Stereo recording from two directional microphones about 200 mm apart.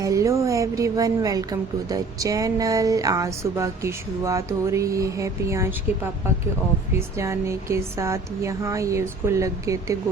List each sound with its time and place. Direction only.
0.0 s a woman's voice: 15° right (ahead or behind)
7.2 s a woman's voice: 15° right (ahead or behind)